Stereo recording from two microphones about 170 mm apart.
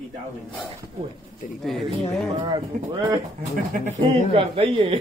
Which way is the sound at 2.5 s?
20° right (ahead or behind).